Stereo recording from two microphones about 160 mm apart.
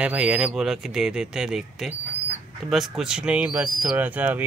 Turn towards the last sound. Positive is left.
turn(degrees=-10)  # may be behind; listen again after turning